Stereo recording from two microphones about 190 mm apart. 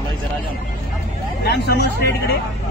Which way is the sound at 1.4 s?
60° left (ahead or behind).